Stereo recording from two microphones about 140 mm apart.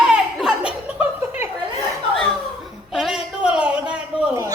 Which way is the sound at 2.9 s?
Centre (ahead or behind).